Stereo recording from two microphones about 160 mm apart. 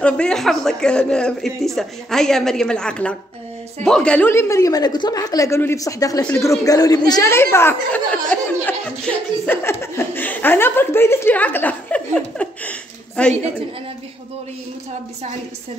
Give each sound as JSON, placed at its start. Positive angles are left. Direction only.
{"t": 0.0, "sound": "a woman's voice", "side_deg": 5}